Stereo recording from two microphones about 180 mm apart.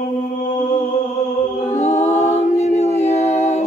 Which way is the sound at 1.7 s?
40° left (ahead or behind).